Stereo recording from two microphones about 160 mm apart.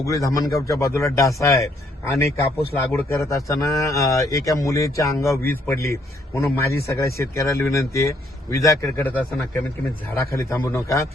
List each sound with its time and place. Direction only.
0.0 s a man's voice: 20° left (ahead or behind)